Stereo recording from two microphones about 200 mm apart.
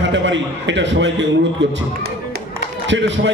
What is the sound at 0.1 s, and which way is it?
A man's voice, 65° right (ahead or behind).